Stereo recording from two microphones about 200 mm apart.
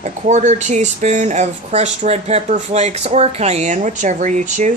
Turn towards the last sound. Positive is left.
turn(degrees=-40)  # may be behind; listen again after turning